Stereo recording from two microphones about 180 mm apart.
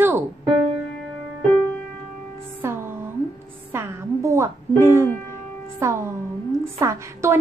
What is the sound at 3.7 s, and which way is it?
A woman's voice, 15° right (ahead or behind).